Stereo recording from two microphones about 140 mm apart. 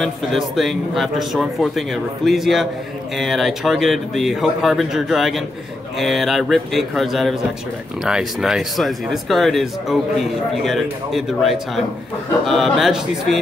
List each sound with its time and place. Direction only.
0.0 s speech: centre (ahead or behind)